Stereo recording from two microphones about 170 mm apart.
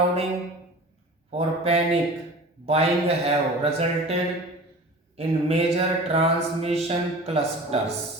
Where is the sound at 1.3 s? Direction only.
35° right (ahead or behind).